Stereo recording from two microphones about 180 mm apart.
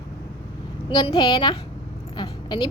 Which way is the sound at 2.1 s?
25° left (ahead or behind).